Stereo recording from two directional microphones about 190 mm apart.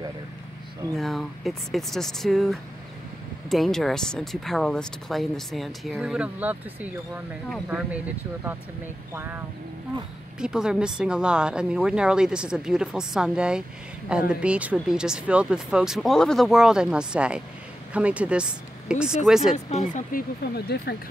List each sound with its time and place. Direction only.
0.9 s speech: centre (ahead or behind)
9.1 s speech: 10° right (ahead or behind)
10.4 s speech: 5° right (ahead or behind)
19.5 s speech: 35° left (ahead or behind); by 20.9 s 60° left (ahead or behind)